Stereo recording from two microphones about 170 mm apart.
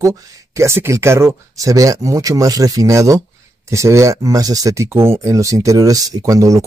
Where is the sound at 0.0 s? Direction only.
15° right (ahead or behind).